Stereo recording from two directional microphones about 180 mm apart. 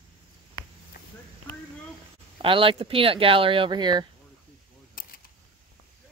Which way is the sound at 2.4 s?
30° right (ahead or behind).